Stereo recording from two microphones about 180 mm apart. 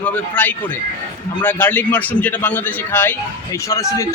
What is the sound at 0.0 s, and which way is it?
A man's voice, 10° left (ahead or behind).